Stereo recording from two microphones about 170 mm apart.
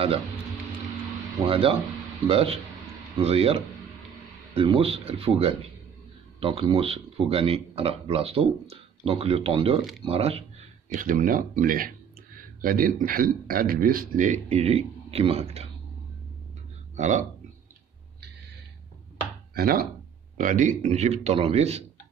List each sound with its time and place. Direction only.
1.4 s speech: 35° right (ahead or behind)
10.9 s a man's voice: 50° right (ahead or behind)
16.9 s speech: 45° right (ahead or behind)
19.5 s speech: 65° right (ahead or behind)
20.3 s speech: 50° right (ahead or behind)